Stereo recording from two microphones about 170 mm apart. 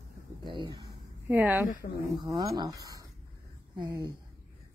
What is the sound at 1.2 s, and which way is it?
Speech, 10° right (ahead or behind).